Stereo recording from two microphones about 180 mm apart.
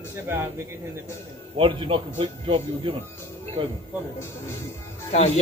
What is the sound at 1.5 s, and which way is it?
A man's voice, 30° right (ahead or behind).